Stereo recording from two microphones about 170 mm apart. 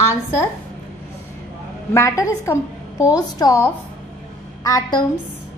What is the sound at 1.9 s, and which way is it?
A woman's voice, 20° left (ahead or behind).